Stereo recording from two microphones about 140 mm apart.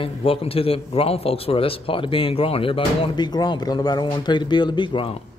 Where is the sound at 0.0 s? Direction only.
45° left (ahead or behind).